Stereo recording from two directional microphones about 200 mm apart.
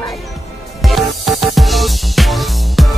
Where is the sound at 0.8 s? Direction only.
Centre (ahead or behind).